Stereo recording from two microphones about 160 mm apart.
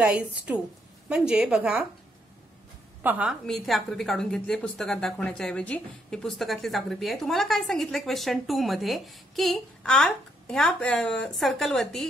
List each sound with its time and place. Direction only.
0.0 s a woman's voice: 5° right (ahead or behind)
3.0 s a woman's voice: 10° right (ahead or behind)
3.4 s speech: centre (ahead or behind)